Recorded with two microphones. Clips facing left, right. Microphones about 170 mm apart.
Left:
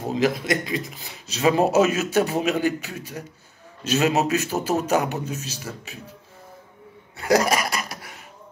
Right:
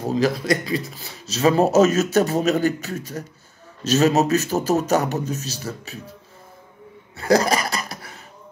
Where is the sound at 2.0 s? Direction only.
15° left (ahead or behind).